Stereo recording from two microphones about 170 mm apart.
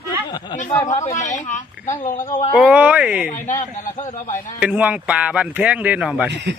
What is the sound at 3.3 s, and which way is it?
Speech, 50° left (ahead or behind).